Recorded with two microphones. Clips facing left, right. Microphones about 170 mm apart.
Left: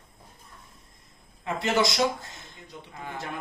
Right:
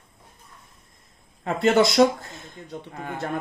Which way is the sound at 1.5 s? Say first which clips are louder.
Right 6 dB; 55° right (ahead or behind).